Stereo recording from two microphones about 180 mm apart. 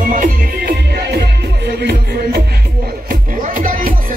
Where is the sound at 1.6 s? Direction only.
65° right (ahead or behind).